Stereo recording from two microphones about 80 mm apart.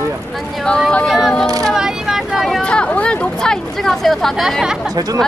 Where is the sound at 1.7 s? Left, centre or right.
Centre.